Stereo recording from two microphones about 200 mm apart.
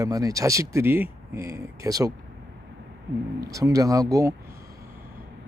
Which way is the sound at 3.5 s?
15° right (ahead or behind).